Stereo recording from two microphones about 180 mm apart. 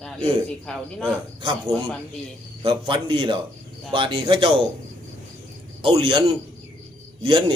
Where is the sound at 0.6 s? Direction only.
5° left (ahead or behind).